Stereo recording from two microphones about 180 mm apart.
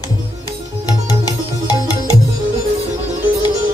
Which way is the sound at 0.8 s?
20° left (ahead or behind).